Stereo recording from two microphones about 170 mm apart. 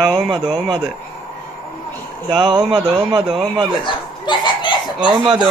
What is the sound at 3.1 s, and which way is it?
Speech, 30° right (ahead or behind).